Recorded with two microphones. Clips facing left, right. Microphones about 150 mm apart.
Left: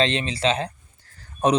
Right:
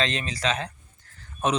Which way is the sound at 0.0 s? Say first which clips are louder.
Left 5 dB; 30° left (ahead or behind).